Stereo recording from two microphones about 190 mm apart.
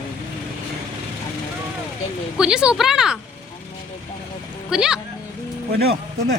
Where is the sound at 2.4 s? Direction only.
5° right (ahead or behind).